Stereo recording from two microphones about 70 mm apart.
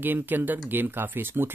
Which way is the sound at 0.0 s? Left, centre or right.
Right.